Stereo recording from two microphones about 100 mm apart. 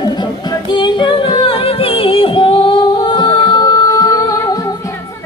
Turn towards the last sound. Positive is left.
turn(degrees=35)  # may be behind; listen again after turning